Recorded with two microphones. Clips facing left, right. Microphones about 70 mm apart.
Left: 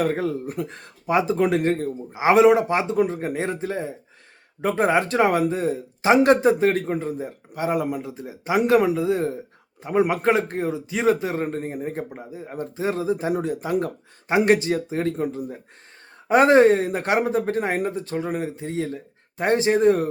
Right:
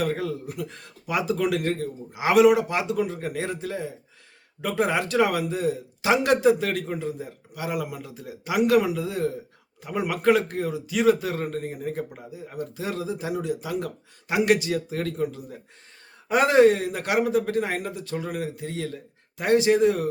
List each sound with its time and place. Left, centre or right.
0.0 s a man's voice: left